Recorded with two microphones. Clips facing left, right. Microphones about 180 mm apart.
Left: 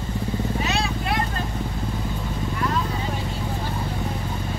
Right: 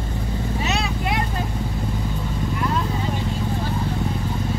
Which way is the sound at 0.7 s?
20° right (ahead or behind).